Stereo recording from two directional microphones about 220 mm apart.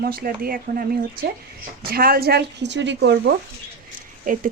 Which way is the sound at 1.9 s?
45° right (ahead or behind).